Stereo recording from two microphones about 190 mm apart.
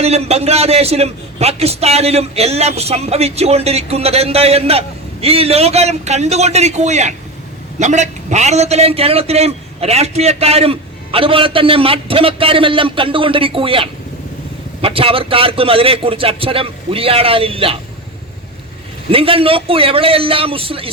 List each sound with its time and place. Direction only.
0.0 s a man's voice: 35° right (ahead or behind)
19.1 s a man's voice: 30° right (ahead or behind)